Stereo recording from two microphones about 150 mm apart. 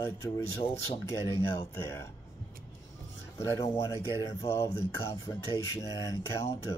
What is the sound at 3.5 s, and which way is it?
Speech, 20° left (ahead or behind).